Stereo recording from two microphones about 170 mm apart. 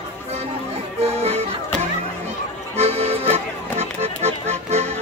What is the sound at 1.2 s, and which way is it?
Music, 35° right (ahead or behind).